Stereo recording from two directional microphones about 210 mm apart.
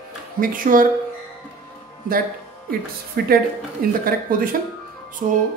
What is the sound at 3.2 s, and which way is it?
Speech, 45° right (ahead or behind).